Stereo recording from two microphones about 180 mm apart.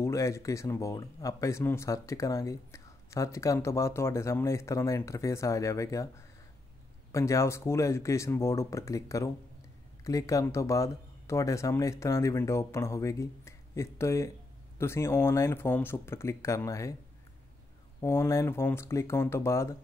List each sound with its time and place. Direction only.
0.0 s speech: 15° left (ahead or behind)
18.0 s speech: 15° left (ahead or behind)